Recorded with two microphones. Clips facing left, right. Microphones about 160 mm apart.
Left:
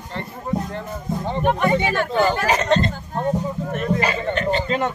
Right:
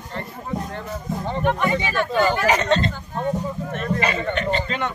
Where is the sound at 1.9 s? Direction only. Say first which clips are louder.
Left 1 dB; 20° left (ahead or behind).